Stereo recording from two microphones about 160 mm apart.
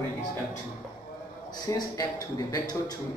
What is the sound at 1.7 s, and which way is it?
A man's voice, 20° left (ahead or behind).